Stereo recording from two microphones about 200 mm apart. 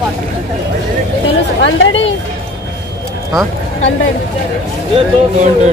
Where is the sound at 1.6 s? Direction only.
75° left (ahead or behind).